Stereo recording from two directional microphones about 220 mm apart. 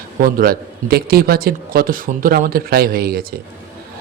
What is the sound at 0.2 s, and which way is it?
A man's voice, 40° right (ahead or behind).